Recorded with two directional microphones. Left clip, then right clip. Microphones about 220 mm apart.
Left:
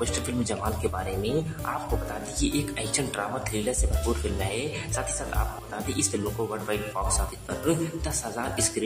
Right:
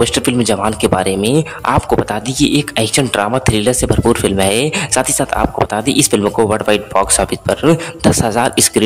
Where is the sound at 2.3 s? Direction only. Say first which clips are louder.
Right 15 dB; 40° right (ahead or behind).